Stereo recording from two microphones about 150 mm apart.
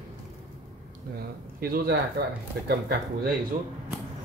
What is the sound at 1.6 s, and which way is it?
Speech, 80° right.